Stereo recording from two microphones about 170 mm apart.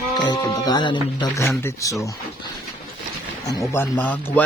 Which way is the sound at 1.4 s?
15° left (ahead or behind).